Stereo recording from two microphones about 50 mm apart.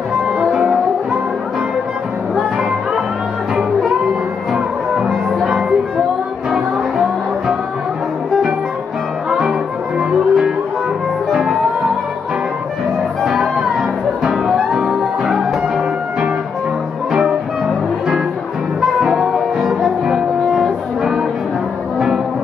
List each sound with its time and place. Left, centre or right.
0.4 s music: centre
5.0 s music: centre
9.9 s music: centre
13.2 s music: centre
17.1 s music: centre
18.8 s music: centre